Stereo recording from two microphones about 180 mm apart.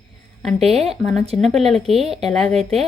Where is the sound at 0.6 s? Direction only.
35° right (ahead or behind).